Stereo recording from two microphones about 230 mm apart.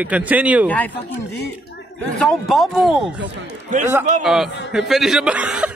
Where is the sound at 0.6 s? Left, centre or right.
Centre.